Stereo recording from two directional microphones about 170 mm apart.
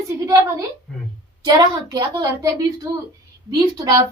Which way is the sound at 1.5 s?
25° right (ahead or behind).